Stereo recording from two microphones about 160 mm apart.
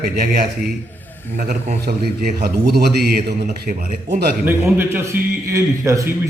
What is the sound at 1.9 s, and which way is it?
A man's voice, 75° right (ahead or behind).